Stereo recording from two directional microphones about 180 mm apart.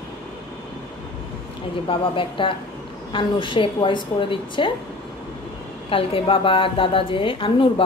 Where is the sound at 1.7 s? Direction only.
30° left (ahead or behind).